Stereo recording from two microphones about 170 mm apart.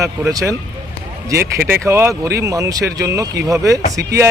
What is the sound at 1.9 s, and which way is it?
Speech, 15° right (ahead or behind).